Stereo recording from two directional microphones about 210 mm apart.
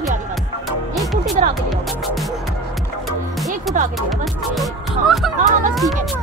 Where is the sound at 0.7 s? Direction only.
Centre (ahead or behind).